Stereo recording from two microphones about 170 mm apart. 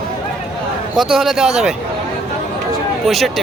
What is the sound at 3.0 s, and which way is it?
Speech, centre (ahead or behind).